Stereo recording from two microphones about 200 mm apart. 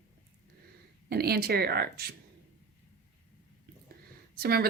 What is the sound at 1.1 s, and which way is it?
Speech, 50° right (ahead or behind).